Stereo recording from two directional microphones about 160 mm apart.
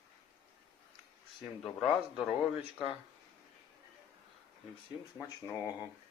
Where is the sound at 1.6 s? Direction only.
Centre (ahead or behind).